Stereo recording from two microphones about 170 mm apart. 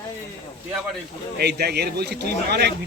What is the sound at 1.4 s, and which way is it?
Speech, 75° right (ahead or behind).